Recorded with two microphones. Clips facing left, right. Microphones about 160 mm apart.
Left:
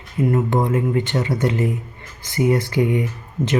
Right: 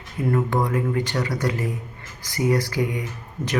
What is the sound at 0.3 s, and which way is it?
Speech, 25° left (ahead or behind).